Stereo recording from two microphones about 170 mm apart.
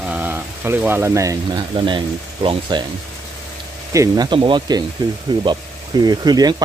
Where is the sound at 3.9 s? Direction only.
25° right (ahead or behind).